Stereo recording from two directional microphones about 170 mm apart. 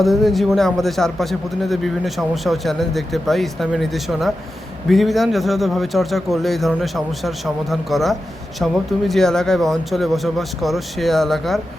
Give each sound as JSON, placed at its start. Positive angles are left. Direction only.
{"t": 0.0, "sound": "speech", "side_deg": 0}